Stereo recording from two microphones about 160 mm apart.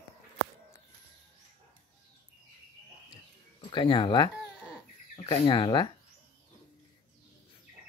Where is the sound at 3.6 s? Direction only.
30° left (ahead or behind).